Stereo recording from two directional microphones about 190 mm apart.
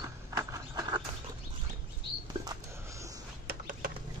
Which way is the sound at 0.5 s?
20° right (ahead or behind).